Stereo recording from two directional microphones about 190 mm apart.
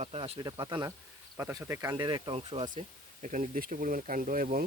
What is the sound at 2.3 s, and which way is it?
Speech, 30° right (ahead or behind).